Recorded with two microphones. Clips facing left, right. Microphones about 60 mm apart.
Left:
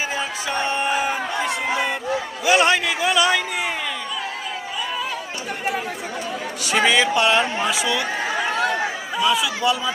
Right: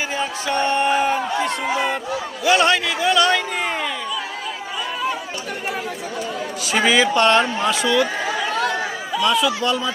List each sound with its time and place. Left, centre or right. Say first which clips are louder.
0.2 s a sound: right 3 dB; centre
6.6 s a man's voice: right 1 dB; centre
8.4 s chatter: left 1 dB; centre
9.2 s a man's voice: right 1 dB; centre